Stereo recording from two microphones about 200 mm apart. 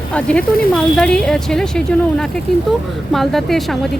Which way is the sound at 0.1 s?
5° left (ahead or behind).